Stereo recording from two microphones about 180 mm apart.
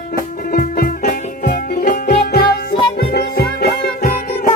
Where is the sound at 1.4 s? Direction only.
55° left (ahead or behind).